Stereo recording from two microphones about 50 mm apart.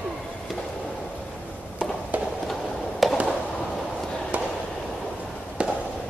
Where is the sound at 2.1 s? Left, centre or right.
Right.